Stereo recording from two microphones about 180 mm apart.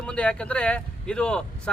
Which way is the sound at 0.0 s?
5° left (ahead or behind).